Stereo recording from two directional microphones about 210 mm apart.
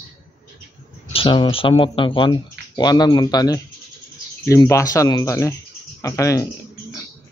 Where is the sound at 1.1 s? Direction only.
25° left (ahead or behind).